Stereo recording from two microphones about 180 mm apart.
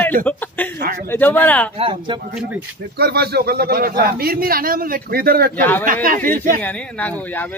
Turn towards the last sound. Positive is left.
turn(degrees=10)  # may be behind; listen again after turning